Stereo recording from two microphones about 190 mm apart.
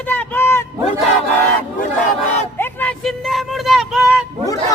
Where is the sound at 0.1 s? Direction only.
10° left (ahead or behind).